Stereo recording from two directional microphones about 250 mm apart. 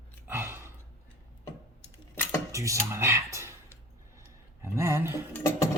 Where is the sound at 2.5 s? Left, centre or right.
Centre.